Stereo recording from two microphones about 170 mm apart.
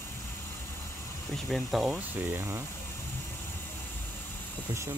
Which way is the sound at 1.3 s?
Centre (ahead or behind).